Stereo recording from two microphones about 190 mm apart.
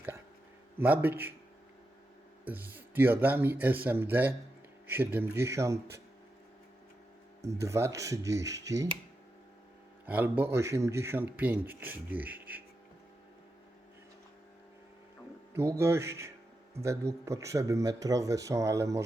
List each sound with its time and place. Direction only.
0.8 s speech: 10° right (ahead or behind)
2.5 s speech: 10° right (ahead or behind)
7.4 s speech: 15° right (ahead or behind)
10.1 s speech: 10° right (ahead or behind)
15.5 s speech: 15° right (ahead or behind)